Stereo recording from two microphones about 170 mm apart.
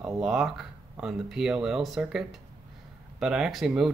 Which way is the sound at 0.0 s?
5° right (ahead or behind).